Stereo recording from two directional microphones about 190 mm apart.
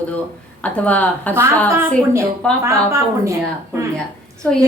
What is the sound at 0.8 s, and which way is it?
Speech, 10° left (ahead or behind).